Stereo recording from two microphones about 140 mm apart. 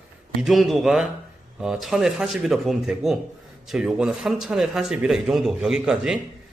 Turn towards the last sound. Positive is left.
turn(degrees=-5)  # may be behind; listen again after turning